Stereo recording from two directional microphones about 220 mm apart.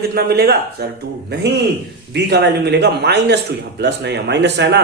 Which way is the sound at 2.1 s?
50° right (ahead or behind).